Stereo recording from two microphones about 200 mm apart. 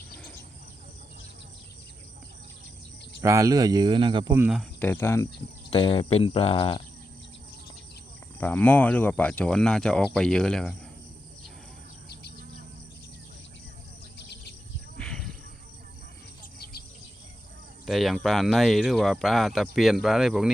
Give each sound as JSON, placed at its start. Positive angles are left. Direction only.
{"t": 3.2, "sound": "speech", "side_deg": -15}
{"t": 4.3, "sound": "speech", "side_deg": -10}
{"t": 4.5, "sound": "speech", "side_deg": 10}
{"t": 5.7, "sound": "speech", "side_deg": 25}
{"t": 8.4, "sound": "speech", "side_deg": 10}
{"t": 14.2, "sound": "bird", "side_deg": 55}
{"t": 14.9, "sound": "a sound", "side_deg": 5}
{"t": 17.8, "sound": "speech", "side_deg": 0}